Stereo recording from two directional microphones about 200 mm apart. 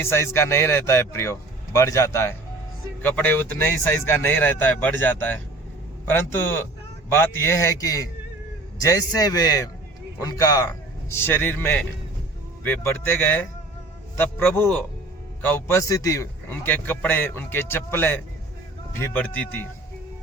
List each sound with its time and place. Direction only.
0.0 s a man's voice: 10° left (ahead or behind)